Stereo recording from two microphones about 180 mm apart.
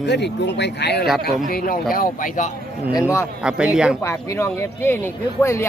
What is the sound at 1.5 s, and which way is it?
Speech, 50° left (ahead or behind).